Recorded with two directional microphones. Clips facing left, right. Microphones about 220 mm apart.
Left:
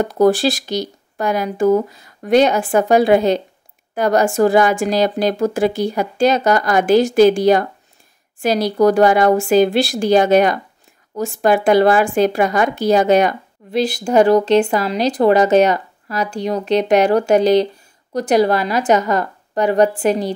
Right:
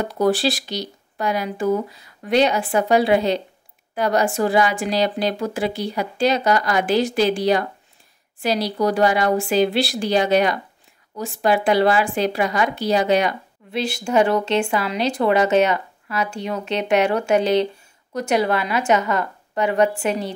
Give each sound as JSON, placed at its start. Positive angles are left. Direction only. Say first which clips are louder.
{"t": 0.0, "sound": "speech", "louder": "left 5 dB", "side_deg": 45}